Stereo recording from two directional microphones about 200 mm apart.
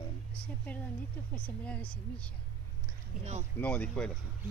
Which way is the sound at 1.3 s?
5° left (ahead or behind).